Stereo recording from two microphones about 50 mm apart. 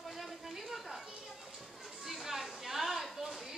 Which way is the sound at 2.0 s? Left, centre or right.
Centre.